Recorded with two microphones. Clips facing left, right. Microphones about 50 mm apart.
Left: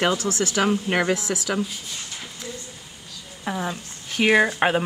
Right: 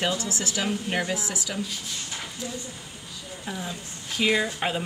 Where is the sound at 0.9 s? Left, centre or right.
Left.